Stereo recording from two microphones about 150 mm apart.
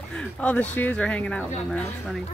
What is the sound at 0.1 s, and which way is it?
Speech, 10° left (ahead or behind).